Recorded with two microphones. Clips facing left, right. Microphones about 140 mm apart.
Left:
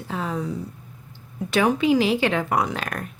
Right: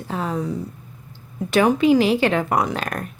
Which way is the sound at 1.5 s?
45° right (ahead or behind).